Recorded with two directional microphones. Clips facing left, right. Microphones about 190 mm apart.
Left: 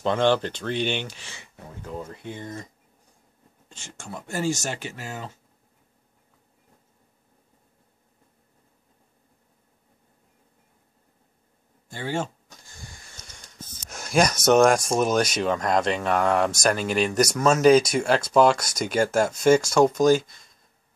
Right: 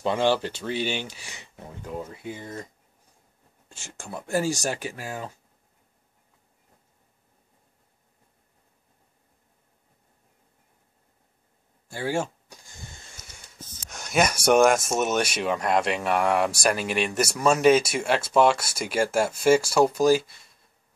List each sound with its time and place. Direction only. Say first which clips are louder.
0.0 s speech: left 2 dB; 10° right (ahead or behind)
11.9 s speech: right 2 dB; 10° right (ahead or behind)
12.8 s a sound: even; 25° right (ahead or behind)
13.8 s speech: left 2 dB; centre (ahead or behind)